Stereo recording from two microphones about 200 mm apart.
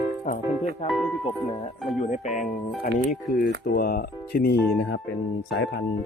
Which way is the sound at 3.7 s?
50° left (ahead or behind).